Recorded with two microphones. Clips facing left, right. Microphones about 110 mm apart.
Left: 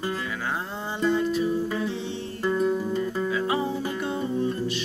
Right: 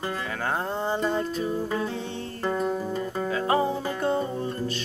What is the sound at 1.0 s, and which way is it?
Music, 40° right (ahead or behind).